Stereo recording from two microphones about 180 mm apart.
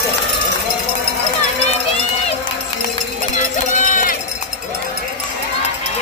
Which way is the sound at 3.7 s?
45° left (ahead or behind).